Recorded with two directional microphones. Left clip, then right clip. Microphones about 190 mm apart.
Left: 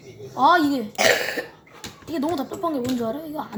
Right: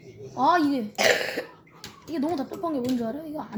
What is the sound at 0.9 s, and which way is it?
Speech, 5° right (ahead or behind).